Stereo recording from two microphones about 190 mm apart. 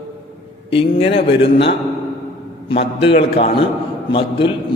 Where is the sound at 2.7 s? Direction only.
30° left (ahead or behind).